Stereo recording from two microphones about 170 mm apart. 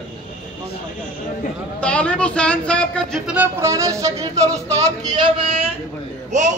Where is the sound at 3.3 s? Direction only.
15° right (ahead or behind); by 5.7 s 35° right (ahead or behind).